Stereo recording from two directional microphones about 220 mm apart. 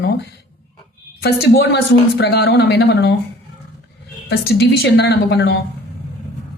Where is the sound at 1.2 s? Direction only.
45° left (ahead or behind).